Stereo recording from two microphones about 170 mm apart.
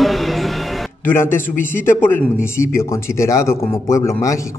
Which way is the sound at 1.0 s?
15° left (ahead or behind).